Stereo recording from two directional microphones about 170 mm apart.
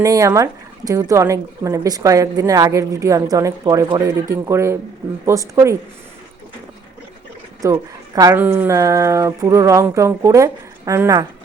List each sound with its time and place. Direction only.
0.0 s speech: 20° right (ahead or behind)
7.6 s speech: 20° right (ahead or behind)
8.4 s a sound: 10° right (ahead or behind)